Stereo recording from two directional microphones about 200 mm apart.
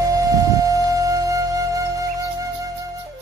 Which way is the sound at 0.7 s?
15° right (ahead or behind).